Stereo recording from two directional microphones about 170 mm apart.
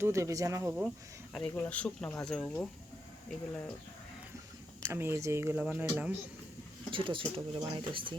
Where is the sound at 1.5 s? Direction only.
10° left (ahead or behind).